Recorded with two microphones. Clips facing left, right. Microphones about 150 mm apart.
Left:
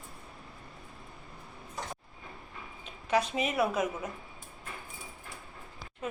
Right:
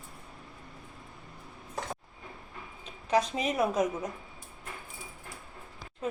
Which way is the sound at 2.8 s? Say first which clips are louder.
Right 2 dB; 35° right (ahead or behind).